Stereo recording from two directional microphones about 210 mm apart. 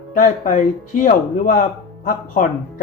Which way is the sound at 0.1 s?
40° left (ahead or behind).